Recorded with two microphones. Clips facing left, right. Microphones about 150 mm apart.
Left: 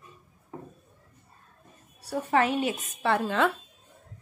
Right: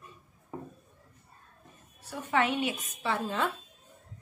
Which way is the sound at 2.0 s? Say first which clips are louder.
Left 4 dB; 40° left (ahead or behind).